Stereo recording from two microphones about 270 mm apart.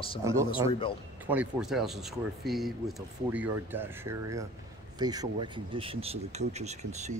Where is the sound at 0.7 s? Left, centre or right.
Centre.